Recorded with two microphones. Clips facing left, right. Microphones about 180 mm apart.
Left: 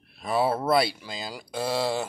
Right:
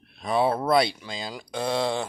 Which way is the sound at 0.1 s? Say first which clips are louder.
Right 1 dB; 5° left (ahead or behind).